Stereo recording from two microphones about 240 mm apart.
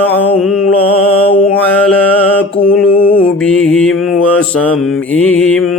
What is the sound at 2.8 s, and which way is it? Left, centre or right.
Mantra, centre.